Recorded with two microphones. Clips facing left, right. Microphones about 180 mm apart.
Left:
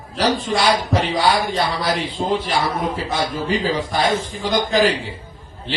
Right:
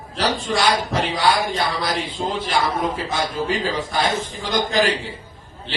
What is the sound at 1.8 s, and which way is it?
Speech, 50° left (ahead or behind).